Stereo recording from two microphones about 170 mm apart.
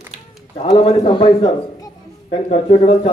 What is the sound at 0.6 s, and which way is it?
Speech, 35° left (ahead or behind).